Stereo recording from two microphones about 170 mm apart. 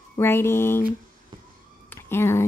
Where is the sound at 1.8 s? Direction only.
15° left (ahead or behind).